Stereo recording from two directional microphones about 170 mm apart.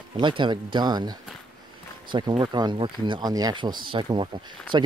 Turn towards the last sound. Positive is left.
turn(degrees=-30)  # may be behind; listen again after turning